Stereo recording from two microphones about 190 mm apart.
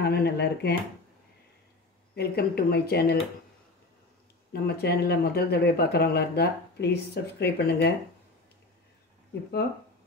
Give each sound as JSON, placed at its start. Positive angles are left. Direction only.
{"t": 0.0, "sound": "speech", "side_deg": 60}
{"t": 2.1, "sound": "speech", "side_deg": 55}
{"t": 4.5, "sound": "speech", "side_deg": 55}